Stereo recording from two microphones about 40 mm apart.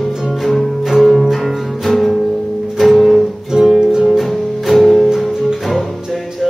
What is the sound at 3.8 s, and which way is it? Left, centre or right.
Music, centre.